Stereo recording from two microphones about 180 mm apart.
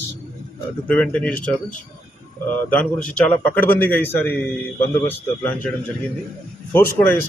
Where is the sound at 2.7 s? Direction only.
5° left (ahead or behind).